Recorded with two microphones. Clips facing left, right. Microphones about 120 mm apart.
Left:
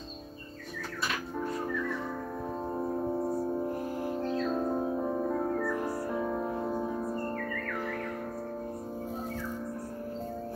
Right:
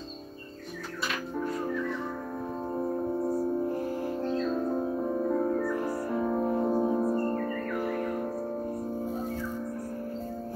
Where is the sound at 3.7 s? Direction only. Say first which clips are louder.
Right 2 dB; 15° left (ahead or behind).